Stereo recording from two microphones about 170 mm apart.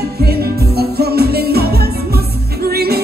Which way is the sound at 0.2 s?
65° right (ahead or behind).